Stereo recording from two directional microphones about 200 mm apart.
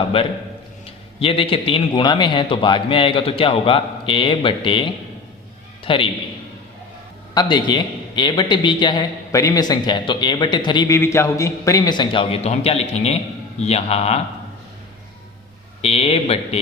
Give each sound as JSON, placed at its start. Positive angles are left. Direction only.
{"t": 0.1, "sound": "a man's voice", "side_deg": 30}
{"t": 7.3, "sound": "a man's voice", "side_deg": 20}
{"t": 15.8, "sound": "a man's voice", "side_deg": 30}